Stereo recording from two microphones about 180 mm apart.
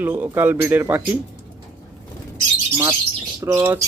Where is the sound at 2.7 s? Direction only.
15° right (ahead or behind).